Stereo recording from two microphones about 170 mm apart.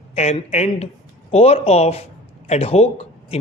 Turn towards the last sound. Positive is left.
turn(degrees=40)  # may be behind; listen again after turning